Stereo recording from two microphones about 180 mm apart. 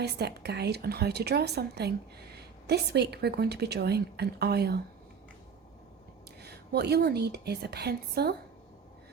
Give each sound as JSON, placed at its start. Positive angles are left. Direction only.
{"t": 0.0, "sound": "a woman's voice", "side_deg": -65}
{"t": 6.4, "sound": "a woman's voice", "side_deg": -65}